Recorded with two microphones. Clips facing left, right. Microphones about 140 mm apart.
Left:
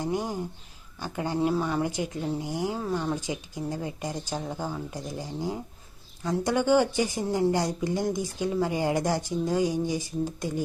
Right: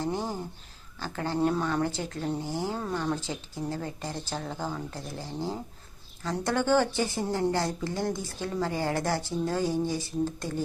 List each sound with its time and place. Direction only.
0.0 s a woman's voice: 15° left (ahead or behind)